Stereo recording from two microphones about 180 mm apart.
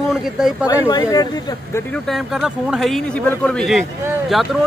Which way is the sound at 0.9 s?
20° left (ahead or behind).